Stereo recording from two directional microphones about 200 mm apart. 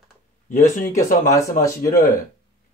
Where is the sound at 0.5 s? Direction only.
40° left (ahead or behind).